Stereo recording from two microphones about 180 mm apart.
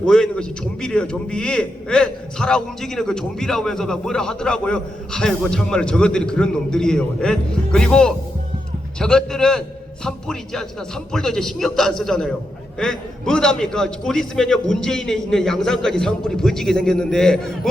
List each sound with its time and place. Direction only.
0.0 s a man's voice: 5° left (ahead or behind)